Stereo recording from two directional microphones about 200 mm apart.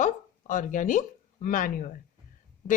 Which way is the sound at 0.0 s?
40° left (ahead or behind).